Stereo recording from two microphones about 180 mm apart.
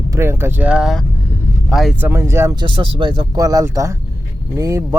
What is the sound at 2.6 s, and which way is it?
Speech, 25° right (ahead or behind).